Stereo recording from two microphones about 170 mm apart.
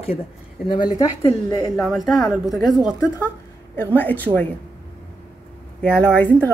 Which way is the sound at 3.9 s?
10° left (ahead or behind).